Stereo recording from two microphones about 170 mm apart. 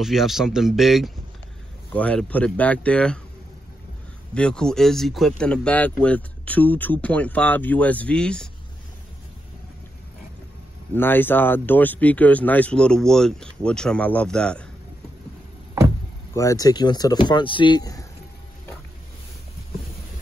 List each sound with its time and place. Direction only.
0.0 s speech: centre (ahead or behind)
4.3 s speech: 5° left (ahead or behind)
11.0 s speech: 10° left (ahead or behind)
16.3 s speech: 20° left (ahead or behind)